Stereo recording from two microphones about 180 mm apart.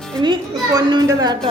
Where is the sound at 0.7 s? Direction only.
20° right (ahead or behind).